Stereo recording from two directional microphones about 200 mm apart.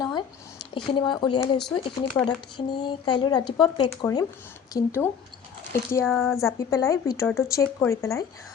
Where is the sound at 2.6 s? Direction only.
20° left (ahead or behind).